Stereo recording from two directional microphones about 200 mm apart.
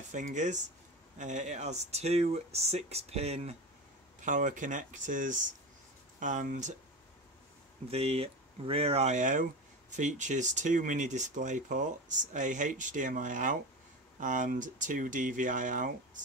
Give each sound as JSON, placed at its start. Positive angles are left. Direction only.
{"t": 0.1, "sound": "speech", "side_deg": -40}
{"t": 7.9, "sound": "speech", "side_deg": -30}